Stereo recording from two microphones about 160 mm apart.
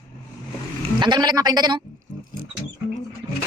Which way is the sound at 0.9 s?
25° right (ahead or behind).